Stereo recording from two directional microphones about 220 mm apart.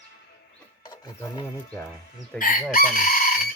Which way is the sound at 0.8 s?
20° left (ahead or behind).